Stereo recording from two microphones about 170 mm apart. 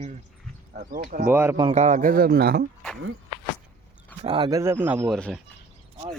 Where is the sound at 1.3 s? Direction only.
15° right (ahead or behind).